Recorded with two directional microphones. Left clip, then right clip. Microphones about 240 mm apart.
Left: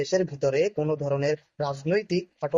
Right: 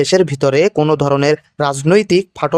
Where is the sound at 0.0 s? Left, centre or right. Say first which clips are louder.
Right 12 dB; right.